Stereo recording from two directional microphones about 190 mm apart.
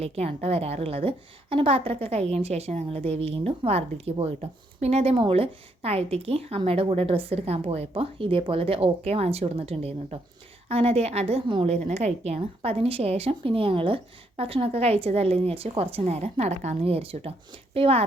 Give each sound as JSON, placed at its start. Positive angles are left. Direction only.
{"t": 0.0, "sound": "a woman's voice", "side_deg": -30}